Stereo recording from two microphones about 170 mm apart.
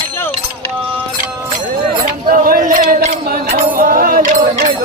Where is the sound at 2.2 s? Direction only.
55° right (ahead or behind).